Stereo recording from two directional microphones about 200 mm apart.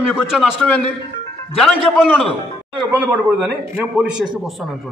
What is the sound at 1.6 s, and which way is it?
A man's voice, centre (ahead or behind).